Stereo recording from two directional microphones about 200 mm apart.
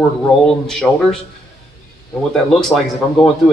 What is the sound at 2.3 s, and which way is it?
Speech, centre (ahead or behind).